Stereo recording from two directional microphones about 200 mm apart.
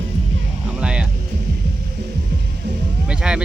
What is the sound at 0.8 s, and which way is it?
Music, 5° right (ahead or behind).